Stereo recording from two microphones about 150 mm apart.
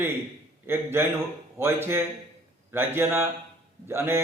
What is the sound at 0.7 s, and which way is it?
Speech, 15° right (ahead or behind).